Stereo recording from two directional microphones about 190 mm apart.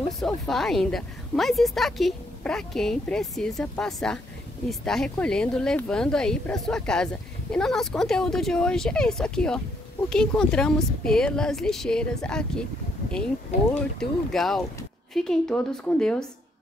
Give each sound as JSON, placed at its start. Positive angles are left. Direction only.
{"t": 0.2, "sound": "speech", "side_deg": 0}
{"t": 13.5, "sound": "speech", "side_deg": 40}
{"t": 13.9, "sound": "speech", "side_deg": 0}